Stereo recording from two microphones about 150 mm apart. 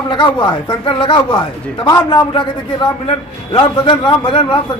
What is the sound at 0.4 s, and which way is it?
A man's voice, 35° left (ahead or behind).